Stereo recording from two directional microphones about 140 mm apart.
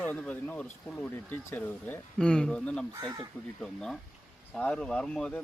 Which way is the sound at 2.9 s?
25° right (ahead or behind).